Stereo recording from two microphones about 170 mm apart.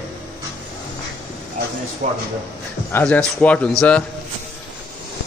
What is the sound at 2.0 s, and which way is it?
Speech, 50° right (ahead or behind).